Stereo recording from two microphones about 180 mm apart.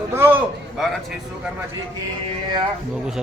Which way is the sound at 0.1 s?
10° right (ahead or behind).